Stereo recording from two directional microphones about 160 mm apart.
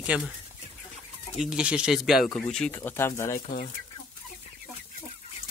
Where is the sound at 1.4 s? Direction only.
5° right (ahead or behind); by 3.4 s 15° left (ahead or behind).